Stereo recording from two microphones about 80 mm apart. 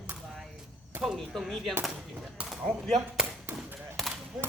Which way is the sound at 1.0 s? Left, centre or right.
Centre.